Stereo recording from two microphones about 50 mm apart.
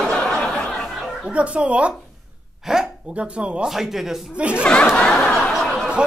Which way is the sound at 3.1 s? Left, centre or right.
Right.